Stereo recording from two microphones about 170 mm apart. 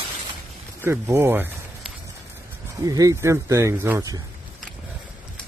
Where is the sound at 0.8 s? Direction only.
10° right (ahead or behind).